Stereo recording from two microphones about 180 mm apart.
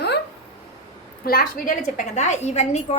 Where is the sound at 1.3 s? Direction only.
50° left (ahead or behind).